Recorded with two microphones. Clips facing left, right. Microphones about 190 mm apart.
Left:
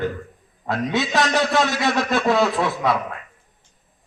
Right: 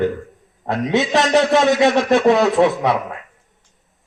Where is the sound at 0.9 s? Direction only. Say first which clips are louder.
Right 6 dB; 20° right (ahead or behind).